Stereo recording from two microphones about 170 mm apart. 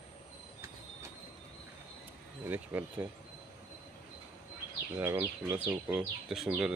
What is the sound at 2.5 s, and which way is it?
Speech, 10° right (ahead or behind).